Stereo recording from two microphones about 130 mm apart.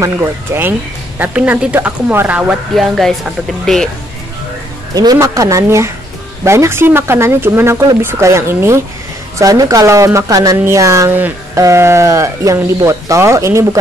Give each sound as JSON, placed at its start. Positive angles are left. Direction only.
{"t": 0.0, "sound": "speech", "side_deg": -20}
{"t": 2.7, "sound": "speech", "side_deg": 0}
{"t": 4.9, "sound": "speech", "side_deg": -30}